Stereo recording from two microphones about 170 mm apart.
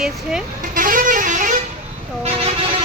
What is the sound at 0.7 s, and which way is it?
Vehicle, 55° right (ahead or behind).